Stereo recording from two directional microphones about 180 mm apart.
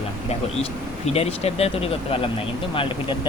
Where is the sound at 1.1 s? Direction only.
35° left (ahead or behind).